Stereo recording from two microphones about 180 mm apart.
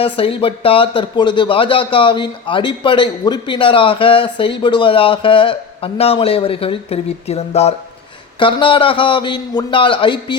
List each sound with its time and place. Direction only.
0.0 s speech: 30° left (ahead or behind)